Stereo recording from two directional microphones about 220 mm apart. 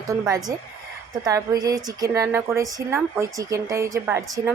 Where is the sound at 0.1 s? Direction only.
15° right (ahead or behind).